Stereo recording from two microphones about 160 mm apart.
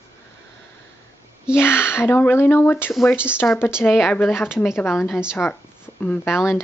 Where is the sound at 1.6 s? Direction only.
15° left (ahead or behind).